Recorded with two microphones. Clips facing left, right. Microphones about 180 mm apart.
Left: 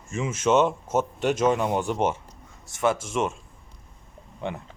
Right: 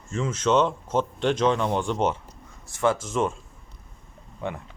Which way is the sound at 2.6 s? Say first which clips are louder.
Right 1 dB; 20° left (ahead or behind).